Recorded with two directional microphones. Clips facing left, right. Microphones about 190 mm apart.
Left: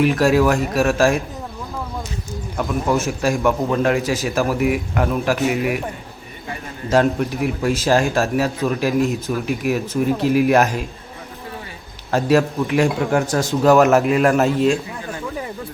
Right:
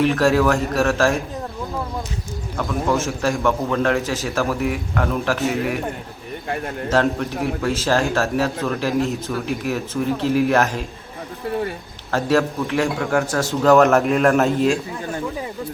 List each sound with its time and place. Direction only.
0.0 s a man's voice: 15° left (ahead or behind)
2.6 s a man's voice: 15° left (ahead or behind)
6.9 s a man's voice: 15° left (ahead or behind)
12.1 s a man's voice: 15° left (ahead or behind); by 14.8 s centre (ahead or behind)